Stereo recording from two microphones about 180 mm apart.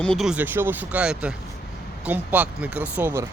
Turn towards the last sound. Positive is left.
turn(degrees=-10)  # may be behind; listen again after turning